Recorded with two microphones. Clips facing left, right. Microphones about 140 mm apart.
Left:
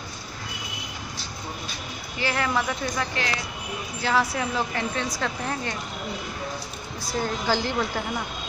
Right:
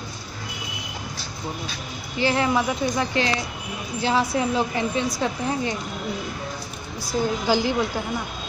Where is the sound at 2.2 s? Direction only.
25° right (ahead or behind).